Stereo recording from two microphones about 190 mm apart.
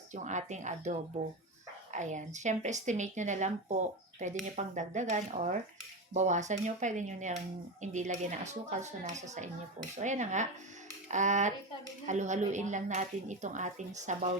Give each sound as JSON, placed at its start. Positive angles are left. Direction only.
{"t": 0.1, "sound": "speech", "side_deg": -40}